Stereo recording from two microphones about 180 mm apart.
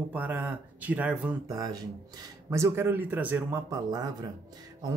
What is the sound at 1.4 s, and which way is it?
Speech, 20° right (ahead or behind).